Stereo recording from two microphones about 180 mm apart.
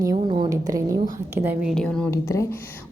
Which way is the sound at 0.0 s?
25° right (ahead or behind).